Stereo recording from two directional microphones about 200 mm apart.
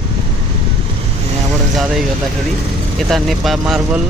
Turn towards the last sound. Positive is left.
turn(degrees=0)  # may be behind; listen again after turning